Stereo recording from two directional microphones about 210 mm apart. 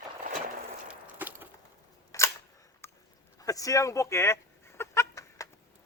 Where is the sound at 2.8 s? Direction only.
10° left (ahead or behind).